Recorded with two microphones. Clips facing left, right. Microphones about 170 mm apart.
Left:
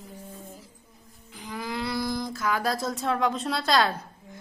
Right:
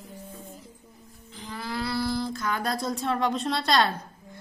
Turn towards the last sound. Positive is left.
turn(degrees=0)  # may be behind; listen again after turning